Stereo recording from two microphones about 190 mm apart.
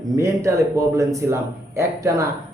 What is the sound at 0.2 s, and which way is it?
A man's voice, 15° right (ahead or behind).